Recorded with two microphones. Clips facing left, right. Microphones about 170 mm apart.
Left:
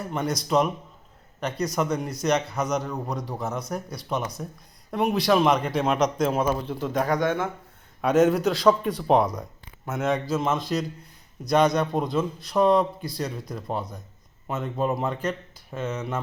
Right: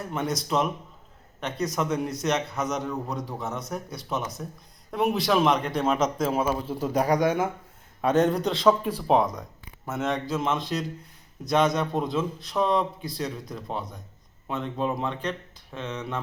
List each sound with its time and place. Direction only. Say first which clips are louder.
0.1 s a man's voice: left 3 dB; centre (ahead or behind)
8.0 s a man's voice: left 2 dB; centre (ahead or behind)